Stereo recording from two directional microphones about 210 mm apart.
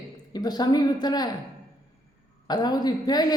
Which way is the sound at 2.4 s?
20° left (ahead or behind).